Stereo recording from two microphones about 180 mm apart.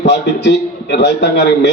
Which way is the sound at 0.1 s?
70° left (ahead or behind).